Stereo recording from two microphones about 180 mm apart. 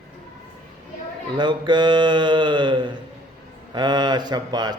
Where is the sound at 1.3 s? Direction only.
25° right (ahead or behind).